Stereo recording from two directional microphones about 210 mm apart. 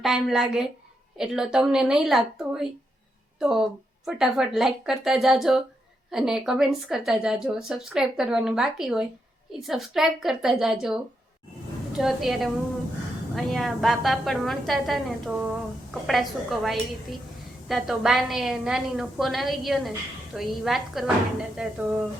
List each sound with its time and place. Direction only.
0.0 s speech: centre (ahead or behind)